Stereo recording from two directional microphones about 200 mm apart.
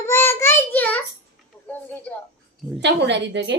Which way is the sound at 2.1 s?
10° left (ahead or behind).